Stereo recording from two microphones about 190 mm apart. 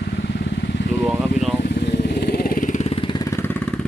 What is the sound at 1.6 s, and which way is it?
Vehicle, 60° left (ahead or behind).